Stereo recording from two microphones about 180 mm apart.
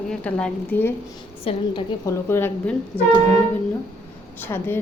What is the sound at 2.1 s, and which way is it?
Speech, 15° left (ahead or behind).